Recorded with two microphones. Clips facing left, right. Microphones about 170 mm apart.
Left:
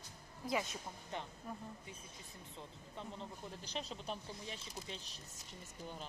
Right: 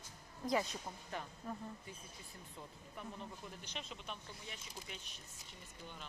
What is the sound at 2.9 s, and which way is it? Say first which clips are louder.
Speech: left 1 dB; 25° left (ahead or behind).